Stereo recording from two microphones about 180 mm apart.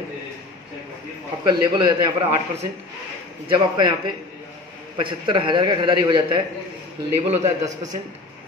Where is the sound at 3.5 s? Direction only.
25° right (ahead or behind).